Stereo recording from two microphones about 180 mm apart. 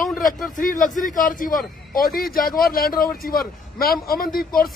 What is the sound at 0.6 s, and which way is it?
A man's voice, 50° left (ahead or behind).